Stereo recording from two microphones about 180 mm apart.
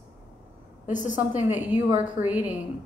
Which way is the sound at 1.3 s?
10° right (ahead or behind).